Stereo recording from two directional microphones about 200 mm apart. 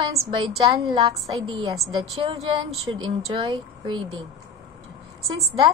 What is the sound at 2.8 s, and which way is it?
A woman's voice, 25° right (ahead or behind).